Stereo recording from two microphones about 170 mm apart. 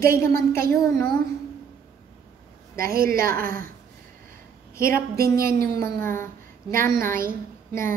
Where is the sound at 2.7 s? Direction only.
60° right (ahead or behind).